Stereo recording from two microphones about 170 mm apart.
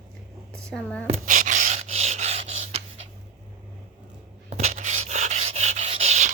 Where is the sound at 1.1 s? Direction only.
45° right (ahead or behind).